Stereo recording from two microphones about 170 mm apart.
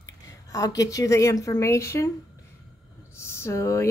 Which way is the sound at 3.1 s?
15° left (ahead or behind).